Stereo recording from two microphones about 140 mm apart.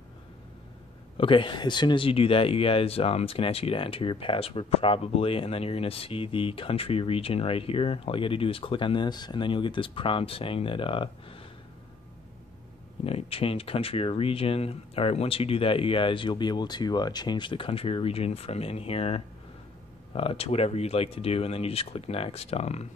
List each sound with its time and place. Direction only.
1.1 s speech: 40° left (ahead or behind)
13.0 s speech: 45° left (ahead or behind)